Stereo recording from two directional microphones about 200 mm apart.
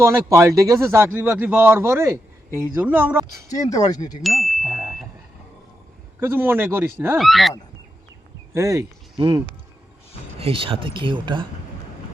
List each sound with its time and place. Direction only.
0.0 s a man's voice: 15° right (ahead or behind)
3.5 s speech: 15° left (ahead or behind)
4.2 s speech: centre (ahead or behind)
4.8 s a sound: centre (ahead or behind)
6.1 s a man's voice: 10° right (ahead or behind)
7.2 s speech: centre (ahead or behind)
8.5 s speech: 15° right (ahead or behind)
10.4 s speech: 25° right (ahead or behind)